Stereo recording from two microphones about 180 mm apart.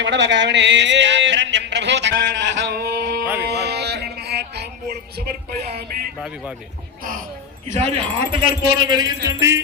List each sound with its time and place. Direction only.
0.0 s a sound: 80° right; by 6.1 s 60° right (ahead or behind)
6.1 s a man's voice: centre (ahead or behind)
7.0 s speech: 50° right (ahead or behind)
7.7 s a man's voice: 35° right (ahead or behind); by 9.6 s 20° right (ahead or behind)